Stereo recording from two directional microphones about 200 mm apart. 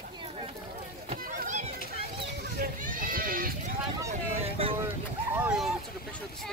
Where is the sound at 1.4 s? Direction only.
35° right (ahead or behind).